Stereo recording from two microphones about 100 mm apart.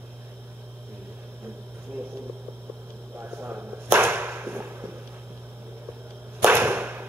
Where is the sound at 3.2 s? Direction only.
20° right (ahead or behind).